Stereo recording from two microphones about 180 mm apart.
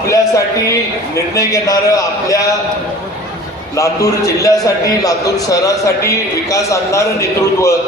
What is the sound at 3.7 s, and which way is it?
A man's voice, 15° left (ahead or behind).